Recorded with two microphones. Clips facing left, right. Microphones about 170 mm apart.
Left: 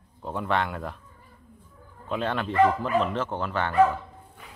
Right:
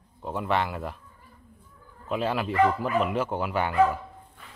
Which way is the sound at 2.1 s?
5° right (ahead or behind).